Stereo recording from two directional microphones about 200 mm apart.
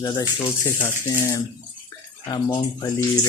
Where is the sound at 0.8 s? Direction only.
10° left (ahead or behind).